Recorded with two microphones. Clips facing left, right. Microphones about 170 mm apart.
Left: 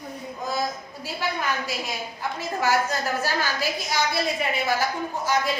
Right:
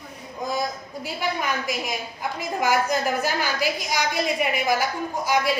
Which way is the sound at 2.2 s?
15° right (ahead or behind).